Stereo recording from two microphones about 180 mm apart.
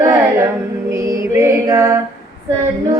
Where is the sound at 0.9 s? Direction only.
15° right (ahead or behind).